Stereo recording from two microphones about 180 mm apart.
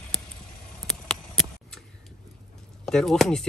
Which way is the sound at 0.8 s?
5° left (ahead or behind).